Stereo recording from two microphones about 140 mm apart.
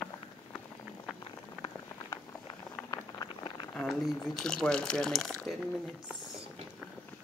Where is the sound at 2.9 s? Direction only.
30° left (ahead or behind).